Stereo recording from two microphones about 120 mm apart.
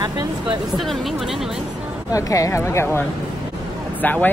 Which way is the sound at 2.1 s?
25° left (ahead or behind).